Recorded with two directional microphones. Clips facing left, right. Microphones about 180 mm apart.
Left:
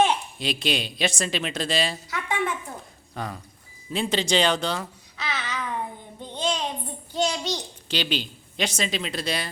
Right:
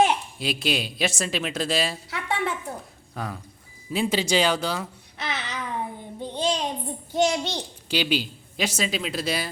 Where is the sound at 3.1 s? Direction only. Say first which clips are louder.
Even; centre (ahead or behind).